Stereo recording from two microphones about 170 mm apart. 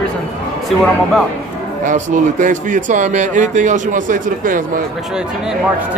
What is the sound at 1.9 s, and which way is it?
Speech, 50° right (ahead or behind).